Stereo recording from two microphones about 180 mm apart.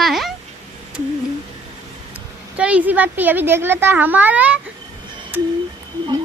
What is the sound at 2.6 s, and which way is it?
Speech, 5° right (ahead or behind).